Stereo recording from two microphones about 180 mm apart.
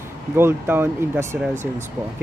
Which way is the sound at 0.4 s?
10° right (ahead or behind).